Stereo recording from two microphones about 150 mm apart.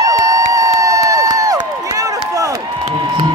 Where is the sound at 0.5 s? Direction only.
25° right (ahead or behind).